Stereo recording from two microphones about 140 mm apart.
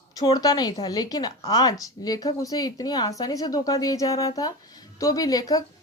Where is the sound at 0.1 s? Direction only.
30° left (ahead or behind).